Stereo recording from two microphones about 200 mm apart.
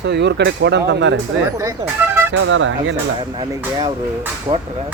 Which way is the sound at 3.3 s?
20° right (ahead or behind).